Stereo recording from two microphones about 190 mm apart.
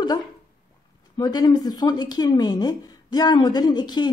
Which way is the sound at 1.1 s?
20° left (ahead or behind).